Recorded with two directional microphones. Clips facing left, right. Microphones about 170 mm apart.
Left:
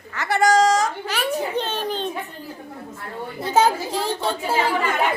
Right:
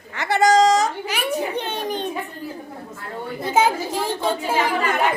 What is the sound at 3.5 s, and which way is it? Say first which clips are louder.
Speech: left 1 dB; 10° right (ahead or behind).